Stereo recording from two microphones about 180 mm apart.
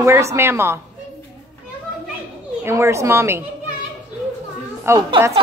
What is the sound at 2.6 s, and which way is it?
Speech, 15° right (ahead or behind).